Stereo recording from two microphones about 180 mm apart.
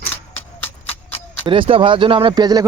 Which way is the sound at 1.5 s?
30° right (ahead or behind).